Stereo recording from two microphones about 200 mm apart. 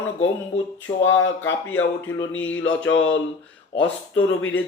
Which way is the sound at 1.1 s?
70° left (ahead or behind).